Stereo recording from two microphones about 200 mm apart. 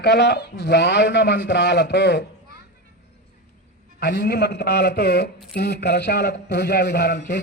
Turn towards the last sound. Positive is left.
turn(degrees=60)  # may be behind; listen again after turning